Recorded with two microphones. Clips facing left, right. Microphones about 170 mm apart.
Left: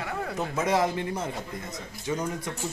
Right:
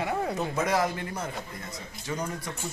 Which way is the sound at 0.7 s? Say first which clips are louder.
Left 2 dB; 20° left (ahead or behind).